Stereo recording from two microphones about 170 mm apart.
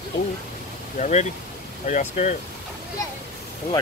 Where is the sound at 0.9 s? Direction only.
45° left (ahead or behind).